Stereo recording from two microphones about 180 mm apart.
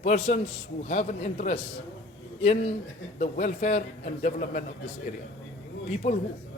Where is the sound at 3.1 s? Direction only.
40° left (ahead or behind).